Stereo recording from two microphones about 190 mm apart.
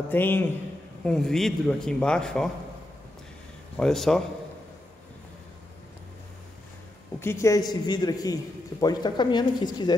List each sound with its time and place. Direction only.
0.1 s a man's voice: 10° left (ahead or behind)
3.7 s a man's voice: centre (ahead or behind)
7.2 s a man's voice: 15° left (ahead or behind)